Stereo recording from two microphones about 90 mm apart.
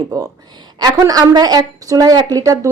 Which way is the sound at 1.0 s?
45° right (ahead or behind).